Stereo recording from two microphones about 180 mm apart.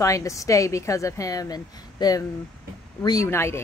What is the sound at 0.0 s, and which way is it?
Speech, 20° left (ahead or behind).